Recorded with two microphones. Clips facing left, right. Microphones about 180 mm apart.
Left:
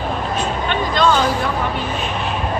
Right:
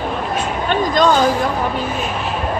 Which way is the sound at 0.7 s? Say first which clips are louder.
Right 3 dB; 45° right (ahead or behind).